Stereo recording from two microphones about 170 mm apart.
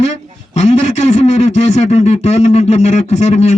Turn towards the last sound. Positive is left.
turn(degrees=40)  # may be behind; listen again after turning